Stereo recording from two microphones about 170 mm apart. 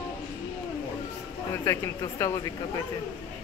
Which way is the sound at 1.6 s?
20° left (ahead or behind).